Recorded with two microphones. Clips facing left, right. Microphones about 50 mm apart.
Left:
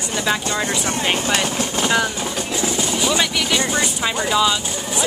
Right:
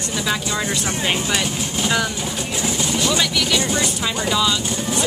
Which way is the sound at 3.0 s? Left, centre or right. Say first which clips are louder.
Even; centre.